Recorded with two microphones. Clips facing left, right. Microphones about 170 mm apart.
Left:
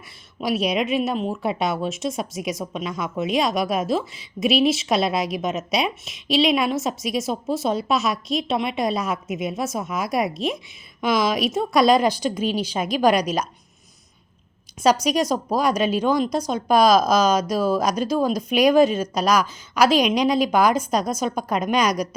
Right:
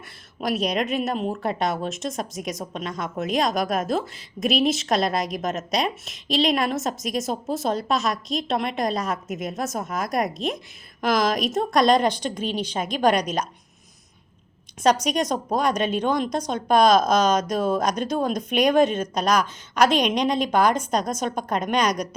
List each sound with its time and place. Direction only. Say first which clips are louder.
0.4 s a woman's voice: left 2 dB; centre (ahead or behind)
15.0 s a woman's voice: left 3 dB; 5° left (ahead or behind)